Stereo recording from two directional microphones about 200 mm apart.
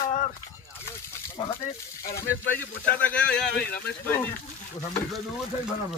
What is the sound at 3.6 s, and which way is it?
Speech, 50° left (ahead or behind).